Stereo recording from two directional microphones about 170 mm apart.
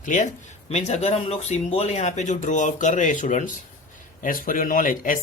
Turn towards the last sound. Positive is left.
turn(degrees=50)  # may be behind; listen again after turning